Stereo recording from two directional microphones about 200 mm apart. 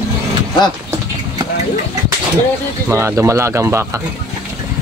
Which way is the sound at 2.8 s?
15° right (ahead or behind).